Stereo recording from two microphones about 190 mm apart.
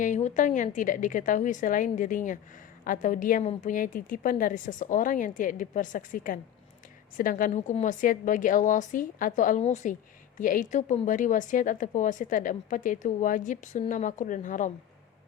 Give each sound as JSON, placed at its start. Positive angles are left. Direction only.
{"t": 0.0, "sound": "a woman's voice", "side_deg": 40}